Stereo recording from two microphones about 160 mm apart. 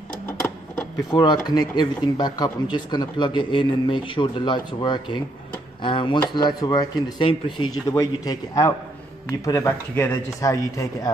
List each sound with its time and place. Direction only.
1.1 s speech: 25° left (ahead or behind)